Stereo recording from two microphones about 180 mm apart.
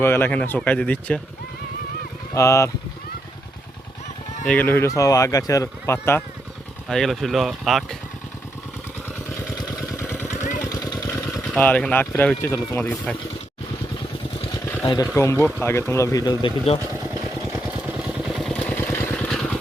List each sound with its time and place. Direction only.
0.0 s speech: 10° left (ahead or behind)
2.3 s speech: 15° left (ahead or behind)
4.4 s speech: 10° left (ahead or behind)
6.8 s speech: centre (ahead or behind)
9.6 s vehicle: 15° left (ahead or behind)
10.2 s vehicle: 40° left (ahead or behind)
10.6 s motorcycle: 20° left (ahead or behind)
11.5 s speech: 10° left (ahead or behind)
15.1 s speech: 15° left (ahead or behind)
17.5 s vehicle: 10° right (ahead or behind)
18.3 s vehicle: 5° left (ahead or behind)